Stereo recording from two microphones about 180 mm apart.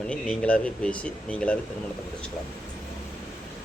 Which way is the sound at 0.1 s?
5° left (ahead or behind).